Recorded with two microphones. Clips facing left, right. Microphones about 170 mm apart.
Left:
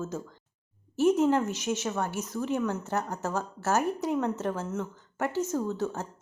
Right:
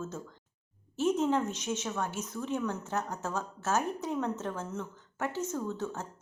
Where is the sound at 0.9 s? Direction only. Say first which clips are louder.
Left 5 dB; 65° left (ahead or behind).